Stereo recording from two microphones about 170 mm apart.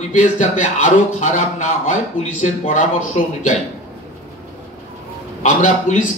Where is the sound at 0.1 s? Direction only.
45° left (ahead or behind).